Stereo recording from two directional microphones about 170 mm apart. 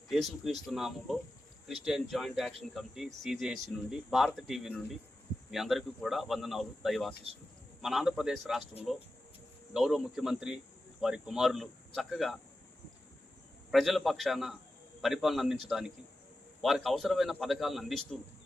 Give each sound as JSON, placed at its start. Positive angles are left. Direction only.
{"t": 0.1, "sound": "speech", "side_deg": 0}
{"t": 9.7, "sound": "speech", "side_deg": 0}
{"t": 13.7, "sound": "speech", "side_deg": 0}